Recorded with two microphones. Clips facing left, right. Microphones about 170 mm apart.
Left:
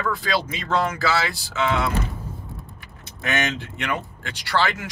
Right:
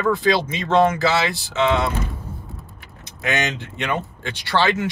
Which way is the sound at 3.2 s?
20° right (ahead or behind).